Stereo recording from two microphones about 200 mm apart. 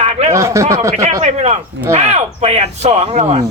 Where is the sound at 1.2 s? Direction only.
35° right (ahead or behind).